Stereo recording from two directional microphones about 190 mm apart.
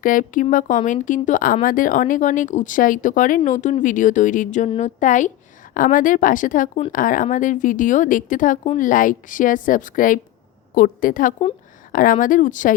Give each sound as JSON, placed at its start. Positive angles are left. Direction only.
{"t": 0.0, "sound": "a woman's voice", "side_deg": 45}